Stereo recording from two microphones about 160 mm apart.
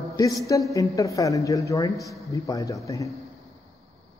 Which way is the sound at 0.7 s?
20° left (ahead or behind).